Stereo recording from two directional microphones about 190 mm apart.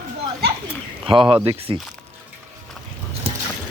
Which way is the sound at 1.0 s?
30° right (ahead or behind).